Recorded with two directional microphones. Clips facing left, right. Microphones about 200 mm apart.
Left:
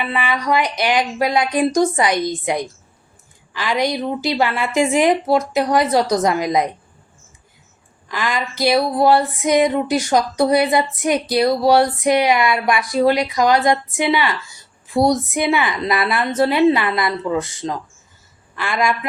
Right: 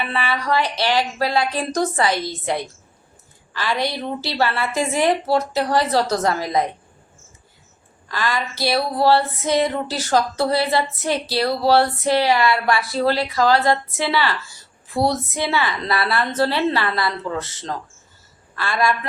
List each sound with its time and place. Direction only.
0.0 s a woman's voice: 15° left (ahead or behind)
8.0 s a woman's voice: 20° left (ahead or behind)